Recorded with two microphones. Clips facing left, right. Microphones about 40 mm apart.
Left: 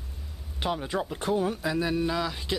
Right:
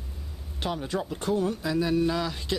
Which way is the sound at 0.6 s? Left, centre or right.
Centre.